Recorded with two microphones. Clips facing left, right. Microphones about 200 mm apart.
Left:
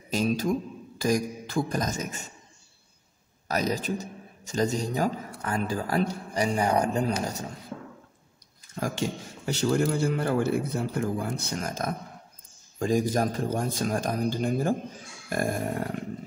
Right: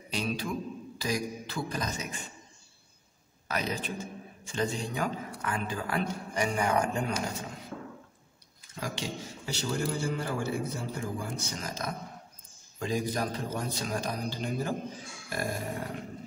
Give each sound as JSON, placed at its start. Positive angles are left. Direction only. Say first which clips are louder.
{"t": 0.1, "sound": "a man's voice", "louder": "left 7 dB", "side_deg": 45}
{"t": 3.4, "sound": "a man's voice", "louder": "left 6 dB", "side_deg": 40}
{"t": 8.7, "sound": "a man's voice", "louder": "left 6 dB", "side_deg": 50}